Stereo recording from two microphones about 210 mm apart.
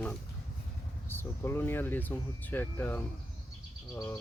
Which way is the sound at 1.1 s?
10° left (ahead or behind).